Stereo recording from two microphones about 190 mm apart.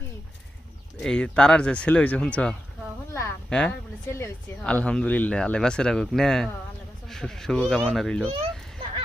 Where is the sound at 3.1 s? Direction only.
15° left (ahead or behind).